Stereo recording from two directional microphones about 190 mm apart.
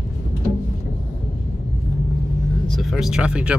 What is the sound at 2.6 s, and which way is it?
Speech, centre (ahead or behind).